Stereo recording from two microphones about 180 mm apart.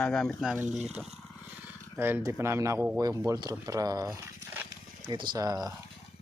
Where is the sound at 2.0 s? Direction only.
10° right (ahead or behind).